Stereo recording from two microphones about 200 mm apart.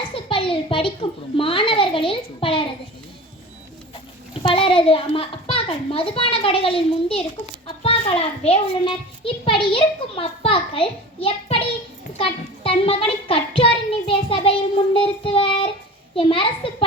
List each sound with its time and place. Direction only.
0.1 s a sound: 25° left (ahead or behind)
1.4 s a child's voice: 25° left (ahead or behind)
4.4 s a child's voice: 25° left (ahead or behind)
12.1 s child singing: 30° left (ahead or behind)
16.1 s a child's voice: 25° left (ahead or behind)